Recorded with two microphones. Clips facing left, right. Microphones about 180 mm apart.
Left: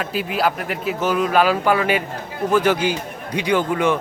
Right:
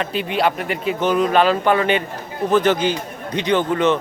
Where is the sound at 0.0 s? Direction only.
5° left (ahead or behind).